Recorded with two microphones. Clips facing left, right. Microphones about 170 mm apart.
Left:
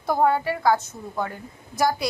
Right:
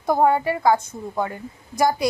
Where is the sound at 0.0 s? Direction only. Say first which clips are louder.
Right 3 dB; 15° right (ahead or behind).